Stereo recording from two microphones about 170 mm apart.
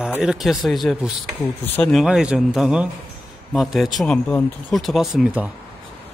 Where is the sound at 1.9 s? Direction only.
5° right (ahead or behind).